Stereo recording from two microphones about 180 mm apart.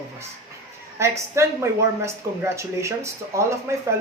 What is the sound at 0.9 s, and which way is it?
Speech, 15° right (ahead or behind).